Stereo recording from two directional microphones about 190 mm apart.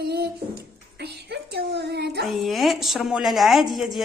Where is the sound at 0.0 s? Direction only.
60° right (ahead or behind).